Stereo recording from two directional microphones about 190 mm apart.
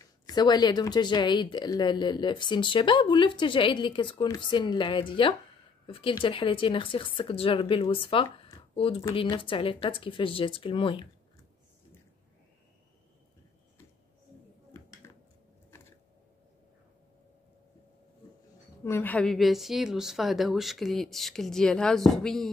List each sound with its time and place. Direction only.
0.0 s speech: 20° left (ahead or behind)
18.9 s a woman's voice: 10° left (ahead or behind)